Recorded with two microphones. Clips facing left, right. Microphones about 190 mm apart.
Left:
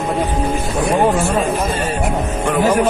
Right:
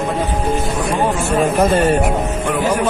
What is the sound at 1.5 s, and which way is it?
Speech, 60° right (ahead or behind).